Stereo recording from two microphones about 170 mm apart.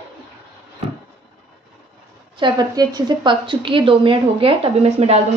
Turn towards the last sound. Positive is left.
turn(degrees=-40)  # may be behind; listen again after turning